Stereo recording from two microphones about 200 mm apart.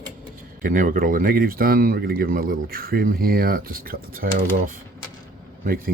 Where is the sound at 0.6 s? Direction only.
45° right (ahead or behind).